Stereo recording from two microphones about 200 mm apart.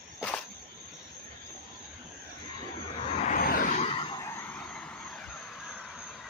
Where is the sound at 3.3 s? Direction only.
45° left (ahead or behind).